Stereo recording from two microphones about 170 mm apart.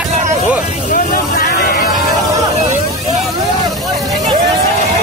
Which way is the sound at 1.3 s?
60° left (ahead or behind).